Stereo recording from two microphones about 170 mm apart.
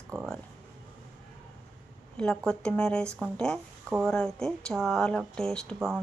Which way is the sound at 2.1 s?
5° left (ahead or behind).